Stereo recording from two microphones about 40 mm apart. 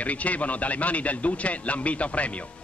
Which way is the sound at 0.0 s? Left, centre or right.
Left.